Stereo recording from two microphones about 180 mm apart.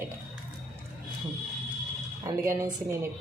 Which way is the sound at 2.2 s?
15° right (ahead or behind).